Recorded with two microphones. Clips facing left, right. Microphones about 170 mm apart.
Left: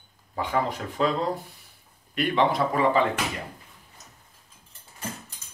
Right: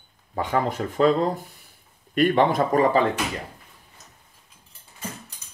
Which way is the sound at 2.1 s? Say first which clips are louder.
Right 4 dB; 45° right (ahead or behind).